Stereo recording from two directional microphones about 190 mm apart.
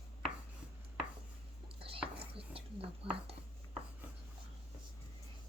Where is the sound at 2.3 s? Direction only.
30° right (ahead or behind).